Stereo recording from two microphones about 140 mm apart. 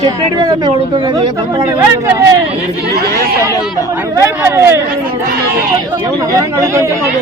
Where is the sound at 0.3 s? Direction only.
30° right (ahead or behind).